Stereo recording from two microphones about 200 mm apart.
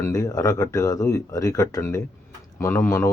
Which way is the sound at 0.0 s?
15° left (ahead or behind).